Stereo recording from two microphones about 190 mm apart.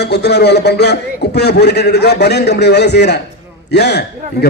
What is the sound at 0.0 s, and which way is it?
A man's voice, 60° left (ahead or behind).